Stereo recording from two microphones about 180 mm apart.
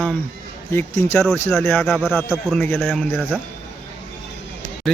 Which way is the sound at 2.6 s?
10° left (ahead or behind).